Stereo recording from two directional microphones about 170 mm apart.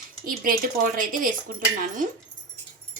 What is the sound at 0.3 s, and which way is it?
A woman's voice, 55° right (ahead or behind).